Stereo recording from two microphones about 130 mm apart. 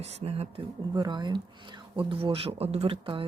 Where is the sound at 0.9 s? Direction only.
30° right (ahead or behind).